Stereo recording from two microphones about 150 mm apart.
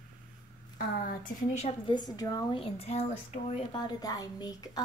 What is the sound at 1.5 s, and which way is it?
Speech, 45° left (ahead or behind).